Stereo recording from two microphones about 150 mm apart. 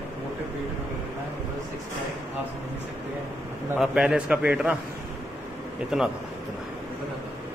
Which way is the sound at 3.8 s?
5° right (ahead or behind).